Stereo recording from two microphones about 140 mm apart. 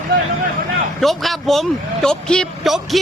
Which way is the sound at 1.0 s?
Centre (ahead or behind).